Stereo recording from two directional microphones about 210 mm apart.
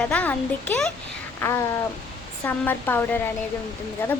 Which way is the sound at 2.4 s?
10° left (ahead or behind).